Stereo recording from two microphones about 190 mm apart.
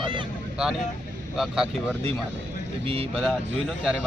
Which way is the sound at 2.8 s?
30° right (ahead or behind).